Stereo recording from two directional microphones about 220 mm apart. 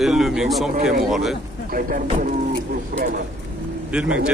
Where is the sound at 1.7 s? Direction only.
40° right (ahead or behind).